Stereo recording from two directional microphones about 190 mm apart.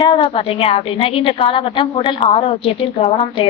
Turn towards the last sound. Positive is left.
turn(degrees=30)  # may be behind; listen again after turning